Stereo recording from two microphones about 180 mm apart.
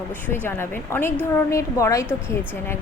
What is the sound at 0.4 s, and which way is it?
Speech, 15° left (ahead or behind).